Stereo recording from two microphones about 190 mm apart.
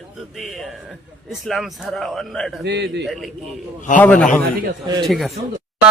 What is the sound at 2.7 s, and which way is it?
Speech, 65° right (ahead or behind).